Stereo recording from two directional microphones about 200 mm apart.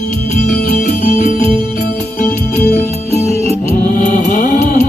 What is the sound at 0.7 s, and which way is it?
Music, 45° left (ahead or behind).